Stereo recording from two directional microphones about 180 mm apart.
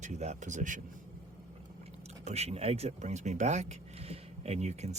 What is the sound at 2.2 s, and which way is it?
Speech, 35° right (ahead or behind).